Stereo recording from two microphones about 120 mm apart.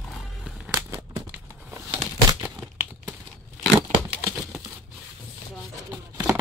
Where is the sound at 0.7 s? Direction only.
30° right (ahead or behind).